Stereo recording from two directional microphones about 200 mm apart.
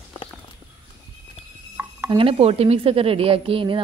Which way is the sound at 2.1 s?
30° right (ahead or behind).